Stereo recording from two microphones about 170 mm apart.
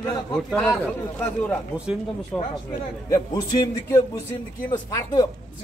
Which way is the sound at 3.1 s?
20° left (ahead or behind).